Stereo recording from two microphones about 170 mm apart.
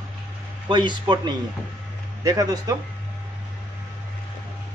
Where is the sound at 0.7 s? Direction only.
25° right (ahead or behind).